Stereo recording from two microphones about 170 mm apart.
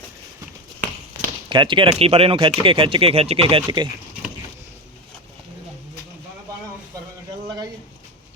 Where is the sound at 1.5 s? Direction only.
30° right (ahead or behind).